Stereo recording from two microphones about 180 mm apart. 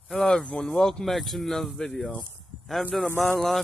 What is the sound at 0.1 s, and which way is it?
Speech, 5° left (ahead or behind).